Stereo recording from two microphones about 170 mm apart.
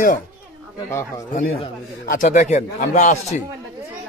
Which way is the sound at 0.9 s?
15° left (ahead or behind).